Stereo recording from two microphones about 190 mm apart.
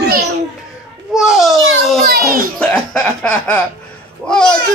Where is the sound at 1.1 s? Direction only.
Centre (ahead or behind).